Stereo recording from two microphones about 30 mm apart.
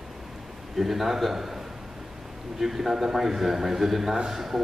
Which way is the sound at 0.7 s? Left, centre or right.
Centre.